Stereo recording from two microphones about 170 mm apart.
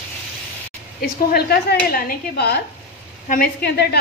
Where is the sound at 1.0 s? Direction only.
70° left (ahead or behind).